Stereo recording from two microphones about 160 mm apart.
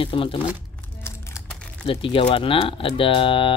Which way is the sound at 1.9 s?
35° left (ahead or behind).